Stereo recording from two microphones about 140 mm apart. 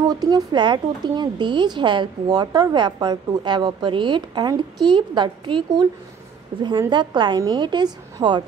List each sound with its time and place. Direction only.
0.1 s speech: 30° right (ahead or behind)
6.9 s speech: 35° right (ahead or behind)